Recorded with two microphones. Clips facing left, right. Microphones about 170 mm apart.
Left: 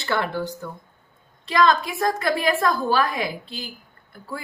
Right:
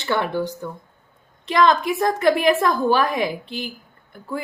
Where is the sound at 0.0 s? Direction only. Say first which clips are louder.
Right 3 dB; 15° right (ahead or behind).